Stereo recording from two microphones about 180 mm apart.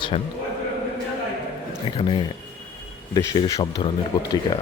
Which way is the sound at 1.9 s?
25° left (ahead or behind).